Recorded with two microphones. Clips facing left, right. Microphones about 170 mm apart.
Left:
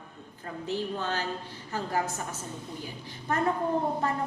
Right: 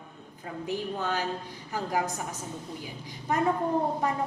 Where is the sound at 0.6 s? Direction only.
15° right (ahead or behind).